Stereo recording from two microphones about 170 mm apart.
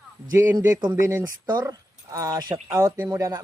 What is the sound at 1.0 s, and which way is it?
A man's voice, 15° right (ahead or behind).